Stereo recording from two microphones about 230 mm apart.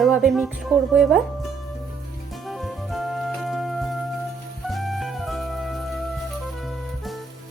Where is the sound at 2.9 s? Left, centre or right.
Centre.